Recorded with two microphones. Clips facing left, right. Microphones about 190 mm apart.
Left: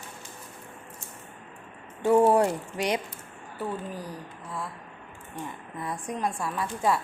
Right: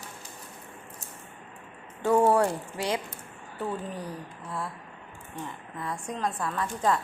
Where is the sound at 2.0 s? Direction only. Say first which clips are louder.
Left 2 dB; 10° left (ahead or behind).